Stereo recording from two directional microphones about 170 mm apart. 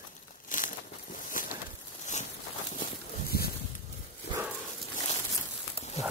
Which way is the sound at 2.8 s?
65° left (ahead or behind).